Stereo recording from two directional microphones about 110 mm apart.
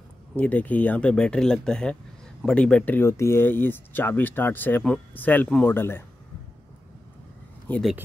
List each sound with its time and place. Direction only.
0.4 s speech: 15° left (ahead or behind)
7.7 s speech: 15° left (ahead or behind)